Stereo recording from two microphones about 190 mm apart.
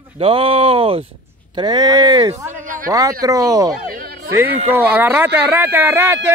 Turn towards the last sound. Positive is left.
turn(degrees=-10)  # may be behind; listen again after turning